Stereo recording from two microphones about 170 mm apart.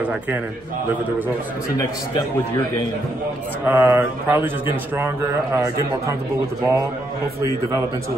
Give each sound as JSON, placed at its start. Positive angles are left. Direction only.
{"t": 0.0, "sound": "a man's voice", "side_deg": -10}
{"t": 3.6, "sound": "a man's voice", "side_deg": -10}